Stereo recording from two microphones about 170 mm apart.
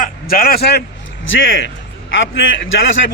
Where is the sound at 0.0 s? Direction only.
60° left (ahead or behind).